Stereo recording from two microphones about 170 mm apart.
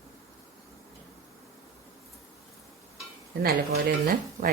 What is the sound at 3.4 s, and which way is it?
Speech, 60° right (ahead or behind).